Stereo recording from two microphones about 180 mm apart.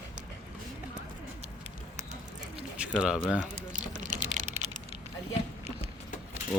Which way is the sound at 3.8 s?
45° right (ahead or behind).